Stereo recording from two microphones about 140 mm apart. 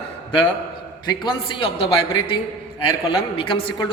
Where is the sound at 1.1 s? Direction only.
35° left (ahead or behind).